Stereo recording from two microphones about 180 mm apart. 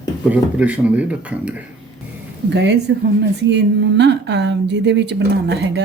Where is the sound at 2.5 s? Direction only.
70° right (ahead or behind).